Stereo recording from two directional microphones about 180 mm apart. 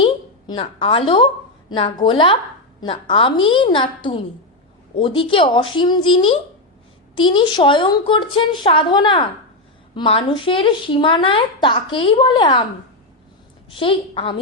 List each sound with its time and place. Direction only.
0.0 s a woman's voice: 30° left (ahead or behind)
13.7 s a woman's voice: 30° left (ahead or behind)